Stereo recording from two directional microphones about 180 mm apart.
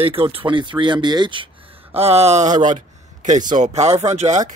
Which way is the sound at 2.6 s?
40° right (ahead or behind).